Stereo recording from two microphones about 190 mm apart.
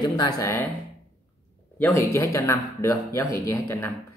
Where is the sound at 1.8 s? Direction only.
15° left (ahead or behind).